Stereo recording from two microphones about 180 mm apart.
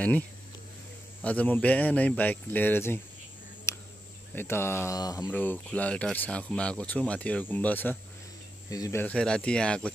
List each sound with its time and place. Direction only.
1.2 s speech: 10° left (ahead or behind)
3.7 s cricket: 15° left (ahead or behind)
4.4 s speech: 15° left (ahead or behind)
5.3 s speech: 10° left (ahead or behind)